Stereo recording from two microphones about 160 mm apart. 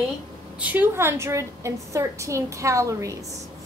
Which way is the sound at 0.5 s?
10° right (ahead or behind).